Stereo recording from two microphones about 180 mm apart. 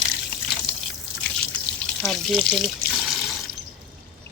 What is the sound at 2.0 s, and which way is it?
Water, centre (ahead or behind).